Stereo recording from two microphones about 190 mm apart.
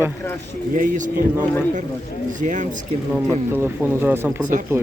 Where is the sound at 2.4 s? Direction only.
40° right (ahead or behind).